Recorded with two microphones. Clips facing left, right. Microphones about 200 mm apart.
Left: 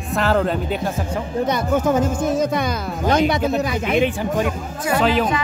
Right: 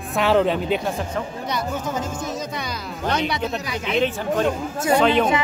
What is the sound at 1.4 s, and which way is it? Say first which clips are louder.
Speech: left 12 dB; 55° left (ahead or behind).